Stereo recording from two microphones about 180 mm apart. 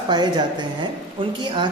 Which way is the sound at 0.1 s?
25° right (ahead or behind).